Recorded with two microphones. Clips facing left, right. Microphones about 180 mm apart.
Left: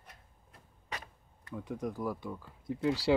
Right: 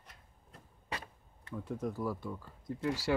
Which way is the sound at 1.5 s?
5° right (ahead or behind).